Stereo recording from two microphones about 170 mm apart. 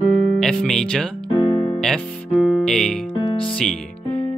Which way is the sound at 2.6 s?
5° left (ahead or behind).